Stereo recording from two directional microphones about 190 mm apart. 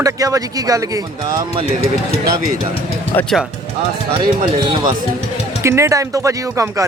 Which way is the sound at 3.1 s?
10° left (ahead or behind).